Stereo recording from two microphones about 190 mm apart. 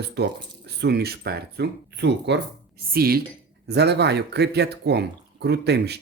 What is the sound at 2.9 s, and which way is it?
Speech, 55° right (ahead or behind).